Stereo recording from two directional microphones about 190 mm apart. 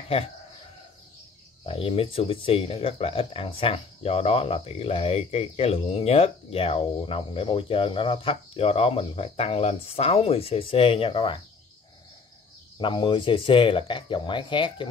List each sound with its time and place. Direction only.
1.7 s speech: 30° left (ahead or behind)
12.7 s speech: 25° left (ahead or behind)